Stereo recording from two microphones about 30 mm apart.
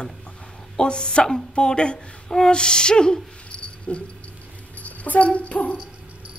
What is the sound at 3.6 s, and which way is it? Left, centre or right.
Dog, left.